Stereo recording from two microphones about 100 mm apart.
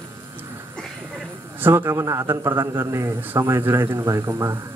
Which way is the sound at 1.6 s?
20° right (ahead or behind).